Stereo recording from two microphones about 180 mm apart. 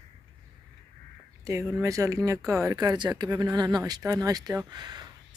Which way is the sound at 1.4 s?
15° right (ahead or behind).